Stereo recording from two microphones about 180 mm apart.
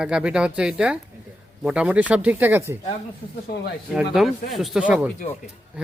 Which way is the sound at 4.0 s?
Centre (ahead or behind).